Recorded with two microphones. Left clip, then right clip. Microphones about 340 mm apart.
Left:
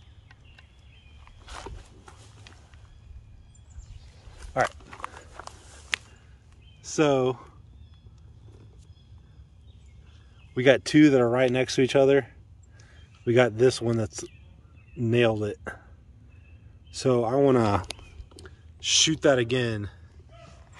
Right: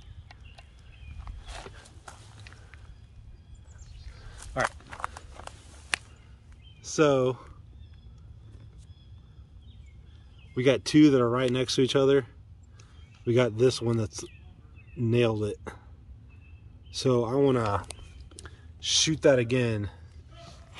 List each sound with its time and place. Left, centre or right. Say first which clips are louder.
4.6 s speech: left 3 dB; centre
6.8 s a sound: even; centre
10.5 s speech: left 3 dB; centre
16.9 s speech: left 2 dB; centre
17.6 s speech: left 4 dB; left
18.8 s speech: left 3 dB; centre